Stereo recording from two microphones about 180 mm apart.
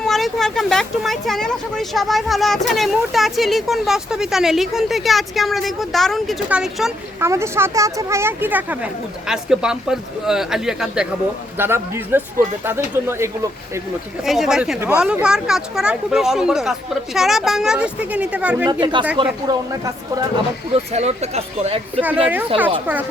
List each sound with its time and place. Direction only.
0.0 s speech: centre (ahead or behind)
7.2 s a woman's voice: 15° right (ahead or behind)
14.3 s speech: centre (ahead or behind)
18.7 s speech: 25° right (ahead or behind)
20.7 s speech: 35° right (ahead or behind)
22.0 s a woman's voice: 10° right (ahead or behind)